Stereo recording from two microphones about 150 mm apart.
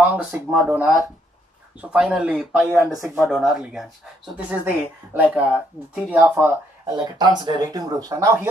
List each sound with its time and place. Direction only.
0.0 s speech: 10° right (ahead or behind)
7.0 s speech: 30° right (ahead or behind)